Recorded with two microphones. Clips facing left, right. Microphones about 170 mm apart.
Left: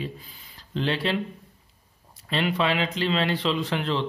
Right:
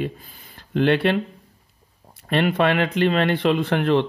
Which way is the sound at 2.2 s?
50° right (ahead or behind).